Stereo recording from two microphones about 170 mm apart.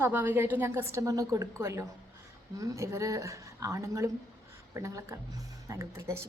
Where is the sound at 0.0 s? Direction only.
10° right (ahead or behind).